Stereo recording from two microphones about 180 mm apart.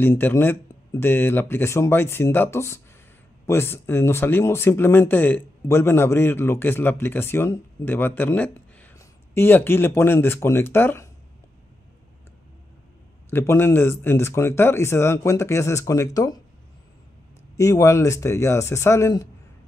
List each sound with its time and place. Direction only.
0.0 s speech: 15° left (ahead or behind)
13.3 s speech: 15° left (ahead or behind)
17.6 s speech: 15° left (ahead or behind)